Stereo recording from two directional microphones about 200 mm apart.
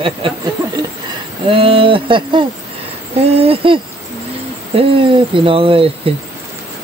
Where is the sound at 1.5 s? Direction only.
25° right (ahead or behind).